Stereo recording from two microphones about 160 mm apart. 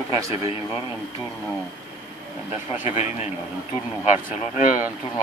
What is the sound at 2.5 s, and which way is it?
Speech, 10° right (ahead or behind).